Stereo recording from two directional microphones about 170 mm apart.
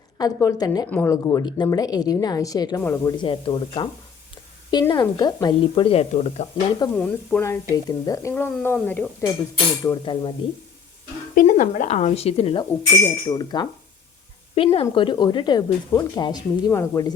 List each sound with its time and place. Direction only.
0.2 s speech: 20° left (ahead or behind)
3.2 s speech: 30° left (ahead or behind)
6.9 s speech: 10° left (ahead or behind)
9.8 s speech: 25° left (ahead or behind)
11.3 s a woman's voice: 50° left (ahead or behind)
13.2 s speech: 25° left (ahead or behind)
14.5 s speech: 35° left (ahead or behind)